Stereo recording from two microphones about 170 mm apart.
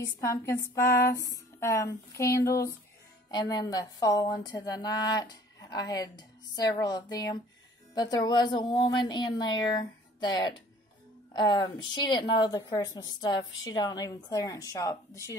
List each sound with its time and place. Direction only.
0.0 s a woman's voice: 20° left (ahead or behind)